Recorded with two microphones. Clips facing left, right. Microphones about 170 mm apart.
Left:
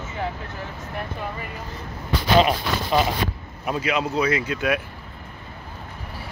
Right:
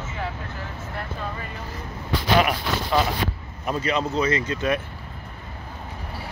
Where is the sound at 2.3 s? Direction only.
20° left (ahead or behind).